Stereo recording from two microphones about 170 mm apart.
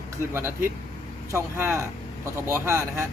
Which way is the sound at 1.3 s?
15° right (ahead or behind).